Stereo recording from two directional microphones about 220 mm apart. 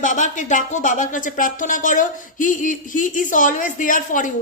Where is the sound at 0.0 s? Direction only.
35° left (ahead or behind).